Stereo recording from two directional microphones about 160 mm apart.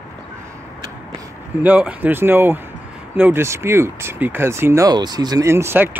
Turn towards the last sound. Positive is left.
turn(degrees=-15)  # may be behind; listen again after turning